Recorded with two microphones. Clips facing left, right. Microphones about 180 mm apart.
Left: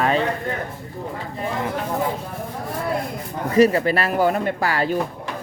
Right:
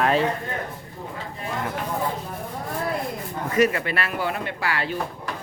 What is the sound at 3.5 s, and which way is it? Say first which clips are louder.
Speech: left 6 dB; 35° left (ahead or behind).